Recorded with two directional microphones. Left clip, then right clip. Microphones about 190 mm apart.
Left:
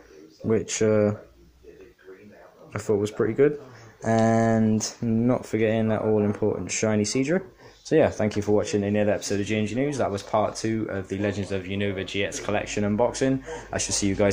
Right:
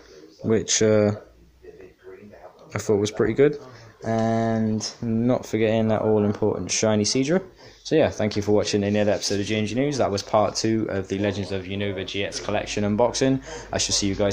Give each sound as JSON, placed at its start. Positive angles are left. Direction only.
{"t": 0.5, "sound": "speech", "side_deg": -5}
{"t": 2.7, "sound": "speech", "side_deg": -5}
{"t": 4.0, "sound": "mantra", "side_deg": 20}
{"t": 5.1, "sound": "speech", "side_deg": 5}
{"t": 11.3, "sound": "speech", "side_deg": 10}
{"t": 12.8, "sound": "speech", "side_deg": -5}